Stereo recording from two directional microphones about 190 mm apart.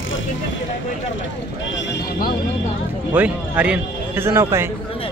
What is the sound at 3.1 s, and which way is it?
Speech, 10° right (ahead or behind).